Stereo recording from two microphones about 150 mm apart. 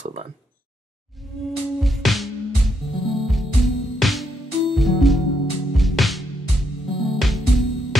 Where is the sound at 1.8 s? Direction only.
Centre (ahead or behind).